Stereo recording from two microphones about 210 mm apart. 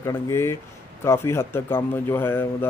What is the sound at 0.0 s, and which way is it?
Speech, 15° left (ahead or behind).